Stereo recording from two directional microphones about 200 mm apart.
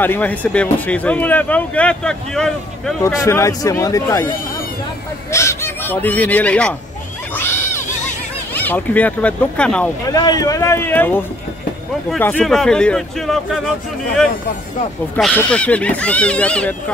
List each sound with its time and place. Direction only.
0.0 s speech: 10° left (ahead or behind)
3.0 s speech: 15° left (ahead or behind)
5.3 s speech: 15° left (ahead or behind)
7.3 s wild animals: 10° left (ahead or behind)
8.5 s speech: 10° left (ahead or behind)
10.0 s speech: 20° left (ahead or behind); by 13.6 s centre (ahead or behind)
15.1 s speech: 5° left (ahead or behind)